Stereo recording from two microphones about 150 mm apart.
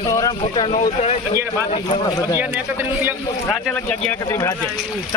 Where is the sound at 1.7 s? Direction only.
40° left (ahead or behind).